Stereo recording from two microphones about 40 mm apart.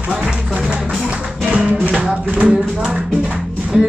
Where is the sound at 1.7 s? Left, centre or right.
Right.